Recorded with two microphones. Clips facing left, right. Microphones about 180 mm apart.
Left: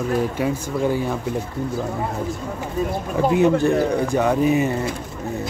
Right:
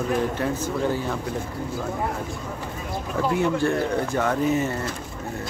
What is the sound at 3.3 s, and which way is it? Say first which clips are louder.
Speech: left 6 dB; 20° left (ahead or behind).